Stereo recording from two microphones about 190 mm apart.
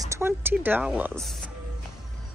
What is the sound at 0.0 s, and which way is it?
A woman's voice, 15° right (ahead or behind).